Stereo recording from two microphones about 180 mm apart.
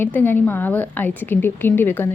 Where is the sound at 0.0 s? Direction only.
10° left (ahead or behind).